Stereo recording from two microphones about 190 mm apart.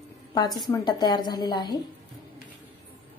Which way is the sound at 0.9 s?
20° left (ahead or behind).